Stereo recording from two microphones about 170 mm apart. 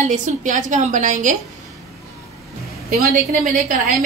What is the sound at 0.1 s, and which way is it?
A woman's voice, 50° right (ahead or behind).